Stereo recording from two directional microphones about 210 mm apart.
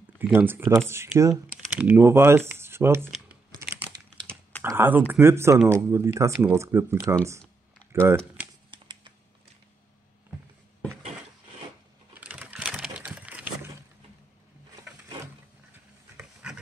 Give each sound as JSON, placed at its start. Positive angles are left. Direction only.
{"t": 0.2, "sound": "speech", "side_deg": -10}
{"t": 1.1, "sound": "typing", "side_deg": -15}
{"t": 4.6, "sound": "speech", "side_deg": -10}
{"t": 8.6, "sound": "typing", "side_deg": -25}
{"t": 12.2, "sound": "a sound", "side_deg": -5}